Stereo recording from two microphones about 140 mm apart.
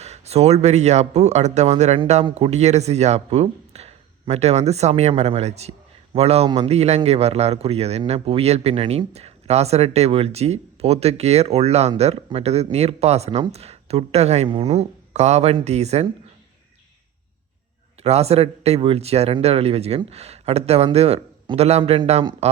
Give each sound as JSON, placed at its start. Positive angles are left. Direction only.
{"t": 0.0, "sound": "speech", "side_deg": -50}
{"t": 18.0, "sound": "speech", "side_deg": -50}